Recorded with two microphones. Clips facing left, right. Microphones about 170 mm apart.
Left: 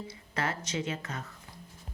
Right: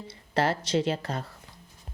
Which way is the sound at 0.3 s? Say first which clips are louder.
Right 8 dB; 30° right (ahead or behind).